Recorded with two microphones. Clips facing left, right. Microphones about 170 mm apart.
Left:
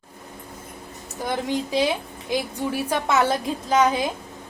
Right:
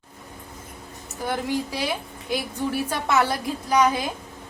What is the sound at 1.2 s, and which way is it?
A woman's voice, 20° left (ahead or behind).